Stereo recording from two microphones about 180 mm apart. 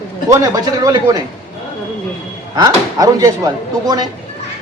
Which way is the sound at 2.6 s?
20° right (ahead or behind).